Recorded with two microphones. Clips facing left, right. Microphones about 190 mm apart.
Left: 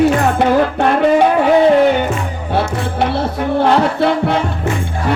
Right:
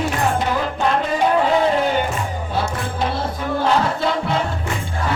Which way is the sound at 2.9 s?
65° left (ahead or behind).